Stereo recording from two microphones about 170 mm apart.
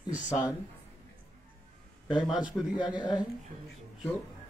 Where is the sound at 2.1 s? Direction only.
5° right (ahead or behind).